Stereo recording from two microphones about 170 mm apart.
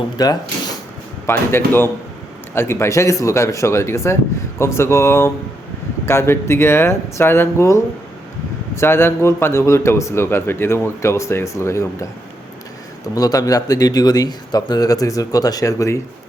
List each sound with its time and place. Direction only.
0.2 s a man's voice: 20° left (ahead or behind)
13.1 s speech: 20° left (ahead or behind)